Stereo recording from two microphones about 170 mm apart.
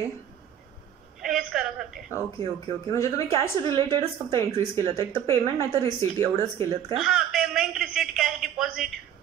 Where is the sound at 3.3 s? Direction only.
35° right (ahead or behind).